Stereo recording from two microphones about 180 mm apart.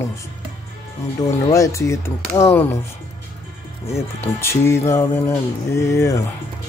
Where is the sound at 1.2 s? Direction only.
20° left (ahead or behind).